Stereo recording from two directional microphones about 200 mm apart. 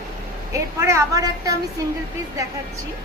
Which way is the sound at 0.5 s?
15° right (ahead or behind).